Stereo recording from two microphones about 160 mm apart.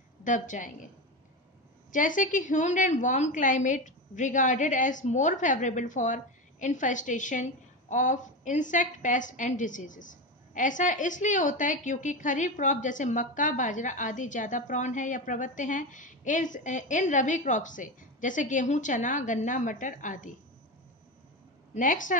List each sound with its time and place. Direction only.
0.2 s a woman's voice: 55° left (ahead or behind)
1.9 s a woman's voice: 55° left (ahead or behind)
21.7 s a woman's voice: 55° left (ahead or behind)